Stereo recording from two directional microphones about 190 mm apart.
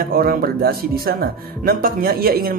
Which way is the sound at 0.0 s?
50° right (ahead or behind).